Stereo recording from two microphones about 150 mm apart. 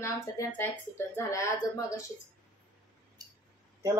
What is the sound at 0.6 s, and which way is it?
Speech, 15° left (ahead or behind).